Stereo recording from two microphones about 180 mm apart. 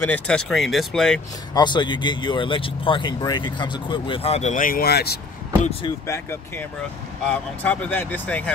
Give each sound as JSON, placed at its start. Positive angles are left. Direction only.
{"t": 0.0, "sound": "speech", "side_deg": 5}
{"t": 1.5, "sound": "speech", "side_deg": 25}
{"t": 6.0, "sound": "speech", "side_deg": 15}